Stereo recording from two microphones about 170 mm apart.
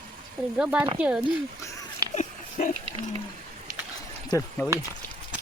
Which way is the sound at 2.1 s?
50° left (ahead or behind).